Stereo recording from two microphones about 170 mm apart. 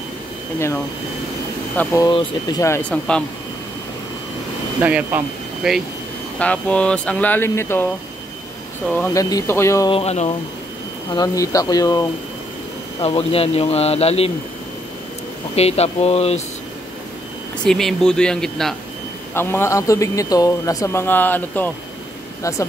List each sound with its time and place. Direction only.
2.0 s speech: 25° left (ahead or behind)
2.9 s speech: 5° left (ahead or behind)
4.7 s speech: 10° right (ahead or behind)
6.4 s speech: 10° left (ahead or behind)
9.1 s speech: 20° left (ahead or behind)
9.8 s speech: 35° left (ahead or behind)
11.1 s speech: 20° left (ahead or behind)
13.0 s speech: 35° left (ahead or behind)
15.5 s speech: 40° left (ahead or behind)
17.6 s speech: centre (ahead or behind)
19.3 s speech: 15° left (ahead or behind)